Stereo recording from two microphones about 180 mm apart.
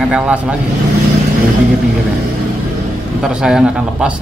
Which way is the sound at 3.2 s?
5° right (ahead or behind).